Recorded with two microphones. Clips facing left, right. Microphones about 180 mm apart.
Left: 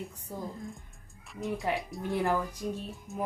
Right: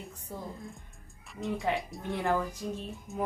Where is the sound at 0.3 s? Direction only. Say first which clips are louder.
Left 1 dB; 10° left (ahead or behind).